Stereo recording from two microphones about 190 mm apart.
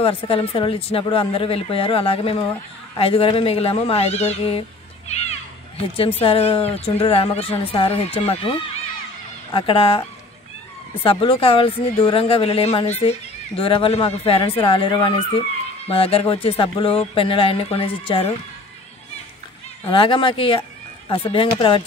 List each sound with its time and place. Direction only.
0.0 s speech: 30° left (ahead or behind)
19.9 s speech: 25° left (ahead or behind)